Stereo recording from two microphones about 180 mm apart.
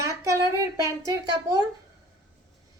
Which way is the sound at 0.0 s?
15° right (ahead or behind).